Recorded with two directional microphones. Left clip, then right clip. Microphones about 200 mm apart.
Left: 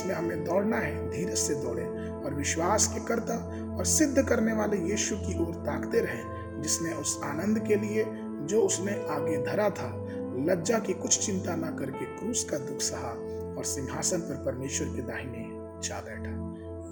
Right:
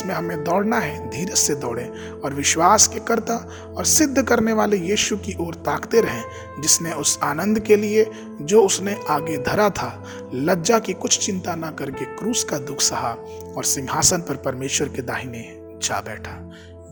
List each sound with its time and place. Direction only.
0.1 s speech: 45° right (ahead or behind)